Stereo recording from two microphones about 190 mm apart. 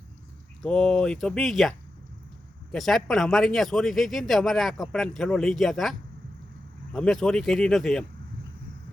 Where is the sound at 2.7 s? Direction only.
Centre (ahead or behind).